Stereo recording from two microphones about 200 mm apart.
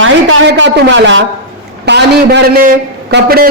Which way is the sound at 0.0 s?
70° right (ahead or behind).